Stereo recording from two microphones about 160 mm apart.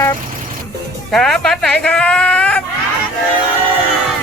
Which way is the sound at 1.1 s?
5° left (ahead or behind).